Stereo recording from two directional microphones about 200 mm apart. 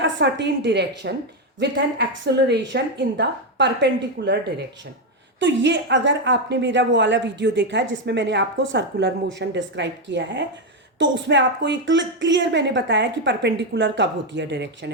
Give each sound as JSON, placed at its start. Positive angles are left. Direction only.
{"t": 0.0, "sound": "a woman's voice", "side_deg": -60}
{"t": 4.2, "sound": "speech", "side_deg": -50}
{"t": 5.4, "sound": "a woman's voice", "side_deg": -65}